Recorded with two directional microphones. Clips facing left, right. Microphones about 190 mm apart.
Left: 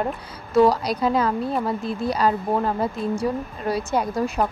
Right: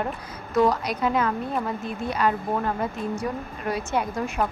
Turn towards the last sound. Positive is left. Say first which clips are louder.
# left 3 dB
turn(degrees=35)  # may be behind; listen again after turning